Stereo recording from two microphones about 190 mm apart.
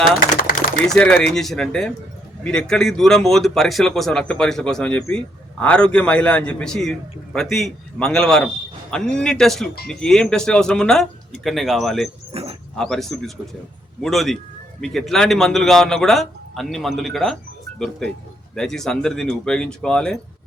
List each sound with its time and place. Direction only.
0.9 s a man's voice: 5° left (ahead or behind)
12.3 s a sound: 30° right (ahead or behind)
12.7 s a man's voice: 5° left (ahead or behind)